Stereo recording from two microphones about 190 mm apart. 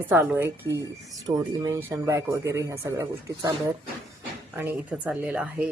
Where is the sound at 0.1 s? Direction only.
5° right (ahead or behind).